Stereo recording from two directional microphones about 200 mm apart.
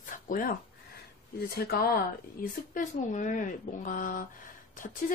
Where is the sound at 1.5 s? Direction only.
50° left (ahead or behind).